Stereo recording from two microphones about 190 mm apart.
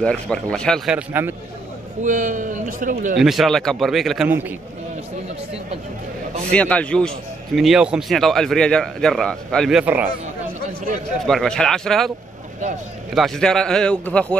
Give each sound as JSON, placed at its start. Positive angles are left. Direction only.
{"t": 0.0, "sound": "a man's voice", "side_deg": 5}
{"t": 2.0, "sound": "a man's voice", "side_deg": -45}
{"t": 3.2, "sound": "a man's voice", "side_deg": 0}
{"t": 6.5, "sound": "a man's voice", "side_deg": 5}
{"t": 11.2, "sound": "a man's voice", "side_deg": 5}
{"t": 13.1, "sound": "a man's voice", "side_deg": 0}